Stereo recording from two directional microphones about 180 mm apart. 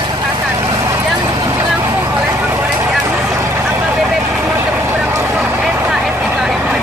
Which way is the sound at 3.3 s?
15° right (ahead or behind).